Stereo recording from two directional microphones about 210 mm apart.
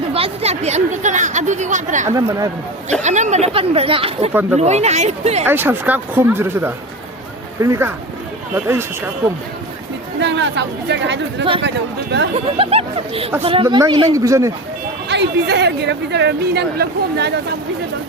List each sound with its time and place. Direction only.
0.1 s speech: 30° right (ahead or behind)
4.3 s speech: 10° right (ahead or behind)
4.5 s speech: 30° right (ahead or behind)
5.5 s speech: 10° right (ahead or behind)
10.2 s speech: 55° right (ahead or behind)
12.5 s speech: 25° right (ahead or behind)
15.1 s speech: 55° right (ahead or behind)